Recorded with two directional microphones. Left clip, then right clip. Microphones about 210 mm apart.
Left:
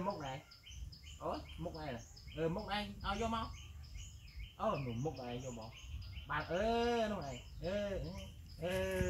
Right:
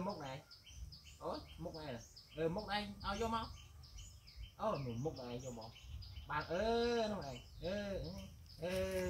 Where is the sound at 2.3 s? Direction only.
25° right (ahead or behind).